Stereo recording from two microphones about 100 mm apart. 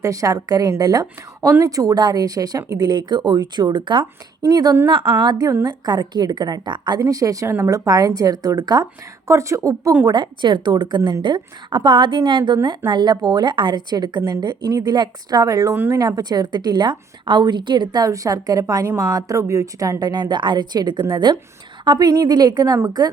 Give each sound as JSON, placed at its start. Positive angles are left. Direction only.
{"t": 0.0, "sound": "a woman's voice", "side_deg": -35}
{"t": 4.9, "sound": "a woman's voice", "side_deg": -55}
{"t": 7.0, "sound": "a woman's voice", "side_deg": -35}
{"t": 9.2, "sound": "speech", "side_deg": -30}
{"t": 10.1, "sound": "a woman's voice", "side_deg": -50}
{"t": 15.7, "sound": "speech", "side_deg": -20}
{"t": 16.0, "sound": "a woman's voice", "side_deg": -40}